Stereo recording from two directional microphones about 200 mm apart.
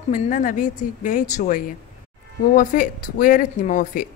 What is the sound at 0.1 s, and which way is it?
A woman's voice, 40° left (ahead or behind).